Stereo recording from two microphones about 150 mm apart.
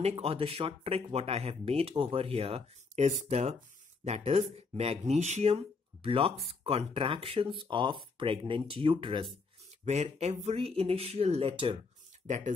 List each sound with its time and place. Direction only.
0.0 s speech: 40° right (ahead or behind)
12.3 s speech: 55° right (ahead or behind)